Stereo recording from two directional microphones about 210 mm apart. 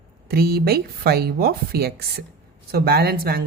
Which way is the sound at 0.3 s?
50° right (ahead or behind).